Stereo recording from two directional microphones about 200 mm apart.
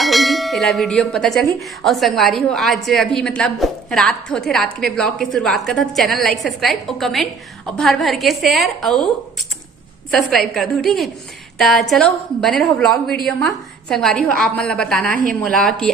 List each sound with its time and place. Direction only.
0.0 s a woman's voice: centre (ahead or behind)
10.1 s a woman's voice: centre (ahead or behind)